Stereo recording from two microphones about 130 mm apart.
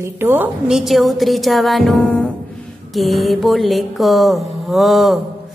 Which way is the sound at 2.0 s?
10° left (ahead or behind).